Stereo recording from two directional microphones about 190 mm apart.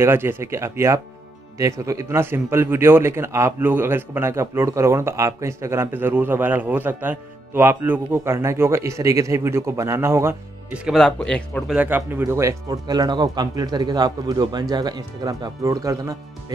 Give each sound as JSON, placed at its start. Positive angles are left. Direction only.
{"t": 0.0, "sound": "a man's voice", "side_deg": -10}
{"t": 11.7, "sound": "speech", "side_deg": -10}